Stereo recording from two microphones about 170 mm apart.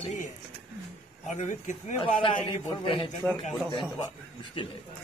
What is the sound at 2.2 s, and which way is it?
Speech, 30° left (ahead or behind).